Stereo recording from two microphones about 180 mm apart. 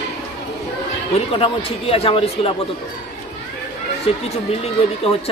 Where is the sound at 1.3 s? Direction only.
30° left (ahead or behind).